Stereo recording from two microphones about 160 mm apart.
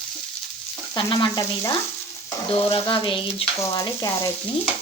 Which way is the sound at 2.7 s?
30° left (ahead or behind).